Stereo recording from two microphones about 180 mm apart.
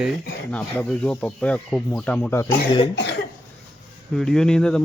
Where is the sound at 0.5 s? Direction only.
5° left (ahead or behind).